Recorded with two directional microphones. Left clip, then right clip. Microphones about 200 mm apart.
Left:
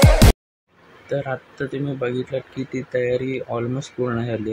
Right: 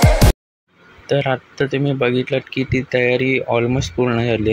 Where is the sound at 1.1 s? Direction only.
25° right (ahead or behind).